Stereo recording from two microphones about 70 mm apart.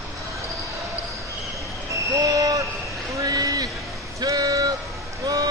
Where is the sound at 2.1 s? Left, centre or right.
Right.